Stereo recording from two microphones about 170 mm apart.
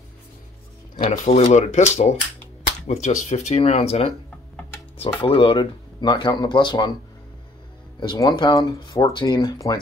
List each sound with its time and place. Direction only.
0.9 s speech: 40° left (ahead or behind); by 6.9 s 25° left (ahead or behind)
8.0 s speech: 25° left (ahead or behind)